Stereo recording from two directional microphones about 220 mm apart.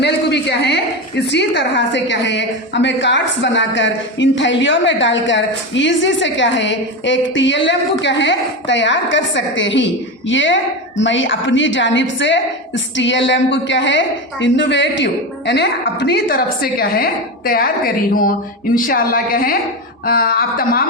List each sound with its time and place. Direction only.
0.0 s a woman's voice: 50° left (ahead or behind)